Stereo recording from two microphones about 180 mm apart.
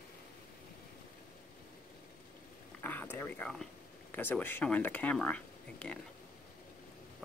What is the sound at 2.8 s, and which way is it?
Speech, 10° left (ahead or behind).